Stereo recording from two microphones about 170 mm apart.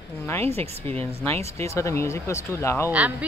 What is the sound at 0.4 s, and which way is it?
Speech, 35° right (ahead or behind).